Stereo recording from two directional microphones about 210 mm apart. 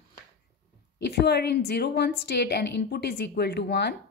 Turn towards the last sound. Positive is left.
turn(degrees=50)  # may be behind; listen again after turning